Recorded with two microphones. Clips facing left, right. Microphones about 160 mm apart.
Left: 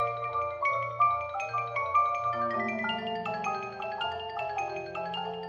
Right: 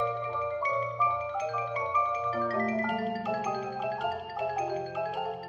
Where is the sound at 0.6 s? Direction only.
35° right (ahead or behind).